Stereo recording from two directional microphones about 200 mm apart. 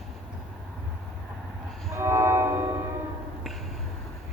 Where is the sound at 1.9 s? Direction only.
15° right (ahead or behind).